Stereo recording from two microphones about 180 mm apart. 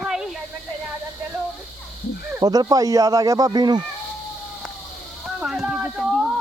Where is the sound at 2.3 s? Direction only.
20° right (ahead or behind).